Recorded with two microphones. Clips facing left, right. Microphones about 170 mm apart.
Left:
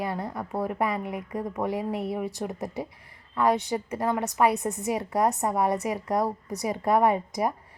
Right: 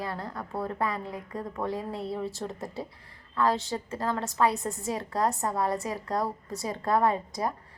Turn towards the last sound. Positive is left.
turn(degrees=20)  # may be behind; listen again after turning